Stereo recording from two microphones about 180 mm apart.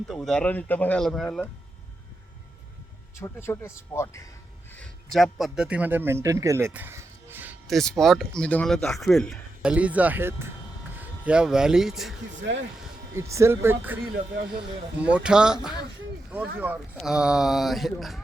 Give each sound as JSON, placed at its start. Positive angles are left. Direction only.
{"t": 0.1, "sound": "speech", "side_deg": 5}
{"t": 3.2, "sound": "speech", "side_deg": 15}
{"t": 4.8, "sound": "a man's voice", "side_deg": 0}
{"t": 7.7, "sound": "speech", "side_deg": 0}
{"t": 12.4, "sound": "speech", "side_deg": -75}
{"t": 13.1, "sound": "speech", "side_deg": -15}
{"t": 17.0, "sound": "speech", "side_deg": -5}